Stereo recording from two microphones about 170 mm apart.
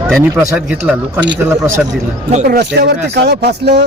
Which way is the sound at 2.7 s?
75° right (ahead or behind).